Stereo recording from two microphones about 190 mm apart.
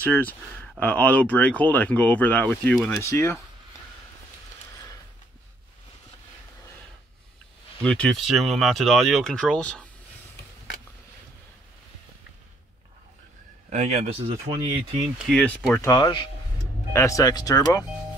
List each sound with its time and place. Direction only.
0.0 s speech: 10° left (ahead or behind)
7.8 s speech: 5° left (ahead or behind)
13.7 s speech: 40° right (ahead or behind)
15.2 s speech: 5° left (ahead or behind)
15.9 s speech: 25° left (ahead or behind)